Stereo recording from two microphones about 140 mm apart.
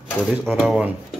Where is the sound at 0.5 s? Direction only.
5° right (ahead or behind).